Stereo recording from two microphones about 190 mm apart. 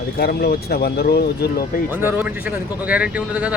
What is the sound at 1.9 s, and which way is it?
Speech, 10° right (ahead or behind).